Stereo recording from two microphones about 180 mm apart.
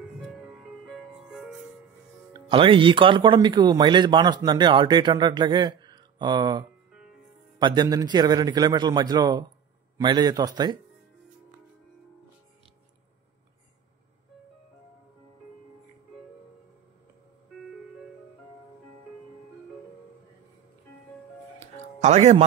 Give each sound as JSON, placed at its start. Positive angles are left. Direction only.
{"t": 0.8, "sound": "music", "side_deg": -5}
{"t": 2.3, "sound": "speech", "side_deg": -30}
{"t": 21.5, "sound": "music", "side_deg": -35}